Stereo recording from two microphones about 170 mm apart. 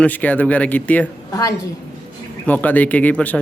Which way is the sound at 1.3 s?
20° left (ahead or behind).